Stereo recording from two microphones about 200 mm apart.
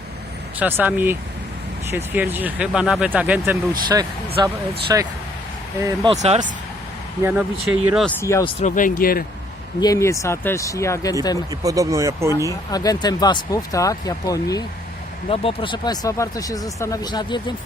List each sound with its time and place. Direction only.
0.6 s speech: 10° right (ahead or behind)
6.1 s speech: 30° right (ahead or behind)
7.2 s speech: 5° right (ahead or behind)
8.2 s speech: 15° left (ahead or behind)
8.6 s speech: 40° left (ahead or behind)
9.8 s speech: 15° left (ahead or behind)
11.6 s speech: 15° right (ahead or behind)
12.5 s speech: 20° left (ahead or behind)